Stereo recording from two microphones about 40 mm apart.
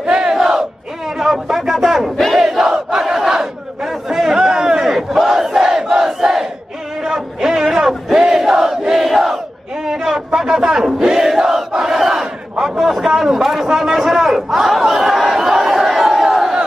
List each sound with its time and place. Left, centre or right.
0.0 s battle cry: right
0.4 s battle cry: centre